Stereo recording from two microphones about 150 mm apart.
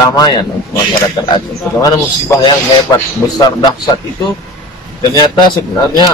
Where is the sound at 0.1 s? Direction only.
25° left (ahead or behind).